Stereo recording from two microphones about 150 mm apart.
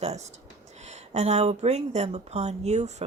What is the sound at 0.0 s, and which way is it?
Speech, 50° right (ahead or behind).